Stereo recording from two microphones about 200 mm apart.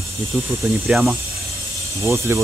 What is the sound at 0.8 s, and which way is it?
Speech, 5° right (ahead or behind).